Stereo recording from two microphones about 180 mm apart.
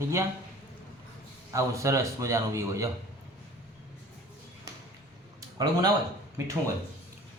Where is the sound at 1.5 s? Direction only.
15° right (ahead or behind).